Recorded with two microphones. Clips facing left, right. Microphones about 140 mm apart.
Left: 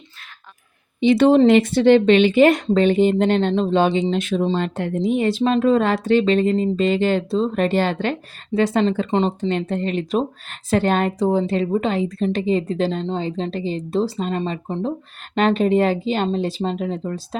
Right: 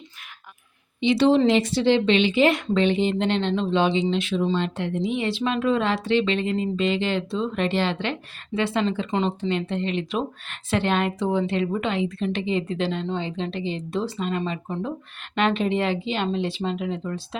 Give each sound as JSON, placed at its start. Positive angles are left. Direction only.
{"t": 1.0, "sound": "speech", "side_deg": 50}